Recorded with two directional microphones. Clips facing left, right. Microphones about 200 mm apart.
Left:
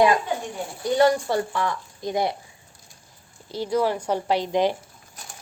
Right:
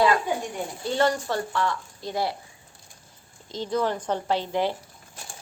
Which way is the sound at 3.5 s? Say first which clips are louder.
Left 3 dB; 10° left (ahead or behind).